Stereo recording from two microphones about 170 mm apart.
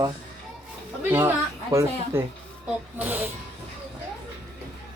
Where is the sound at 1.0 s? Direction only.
15° right (ahead or behind).